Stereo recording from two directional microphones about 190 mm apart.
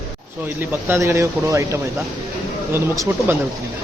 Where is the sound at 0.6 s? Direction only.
10° right (ahead or behind).